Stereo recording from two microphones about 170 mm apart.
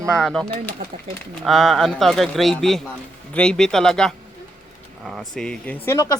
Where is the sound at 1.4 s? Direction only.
Centre (ahead or behind).